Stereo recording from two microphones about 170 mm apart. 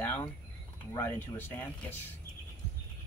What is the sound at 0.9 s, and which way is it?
Speech, 15° left (ahead or behind).